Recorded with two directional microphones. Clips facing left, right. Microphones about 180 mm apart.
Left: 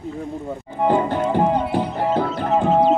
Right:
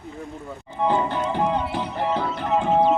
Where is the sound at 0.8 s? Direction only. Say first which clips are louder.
Left 4 dB; 45° left (ahead or behind).